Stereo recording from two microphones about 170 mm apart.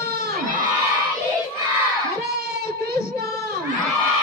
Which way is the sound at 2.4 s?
65° right (ahead or behind).